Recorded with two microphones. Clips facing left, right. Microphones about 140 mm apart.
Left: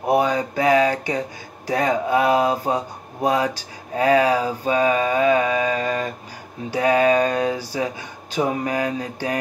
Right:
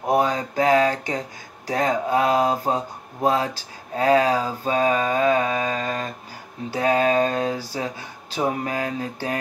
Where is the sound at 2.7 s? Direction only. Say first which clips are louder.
Left 1 dB; 15° left (ahead or behind).